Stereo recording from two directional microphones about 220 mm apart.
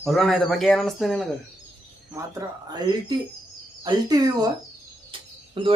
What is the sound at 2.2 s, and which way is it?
Speech, 15° right (ahead or behind).